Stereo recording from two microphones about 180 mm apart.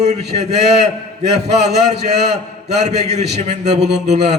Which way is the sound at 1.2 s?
35° right (ahead or behind).